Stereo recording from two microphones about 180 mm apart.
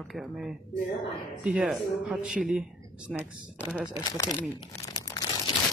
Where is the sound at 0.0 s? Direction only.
Centre (ahead or behind).